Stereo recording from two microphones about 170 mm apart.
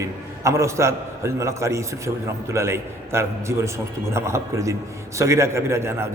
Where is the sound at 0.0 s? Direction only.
15° right (ahead or behind).